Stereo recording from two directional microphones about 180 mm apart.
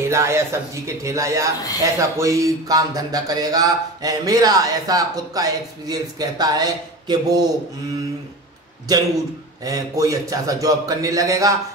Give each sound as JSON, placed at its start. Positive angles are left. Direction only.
{"t": 0.0, "sound": "speech", "side_deg": -15}
{"t": 9.7, "sound": "speech", "side_deg": -20}